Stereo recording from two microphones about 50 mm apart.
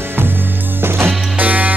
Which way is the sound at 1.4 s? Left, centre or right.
Right.